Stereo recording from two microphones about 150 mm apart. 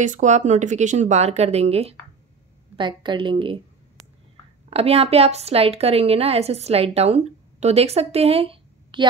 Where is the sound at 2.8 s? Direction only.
30° right (ahead or behind).